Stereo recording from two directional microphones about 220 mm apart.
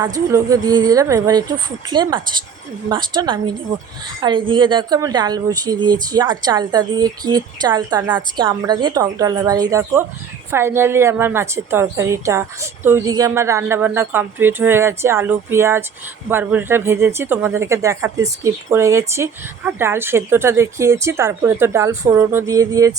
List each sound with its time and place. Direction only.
0.0 s a woman's voice: 15° right (ahead or behind)